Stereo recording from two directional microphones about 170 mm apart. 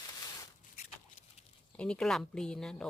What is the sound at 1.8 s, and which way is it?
Speech, 5° left (ahead or behind).